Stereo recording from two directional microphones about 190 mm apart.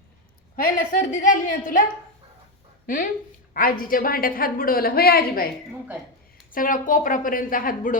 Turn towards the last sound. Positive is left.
turn(degrees=45)  # may be behind; listen again after turning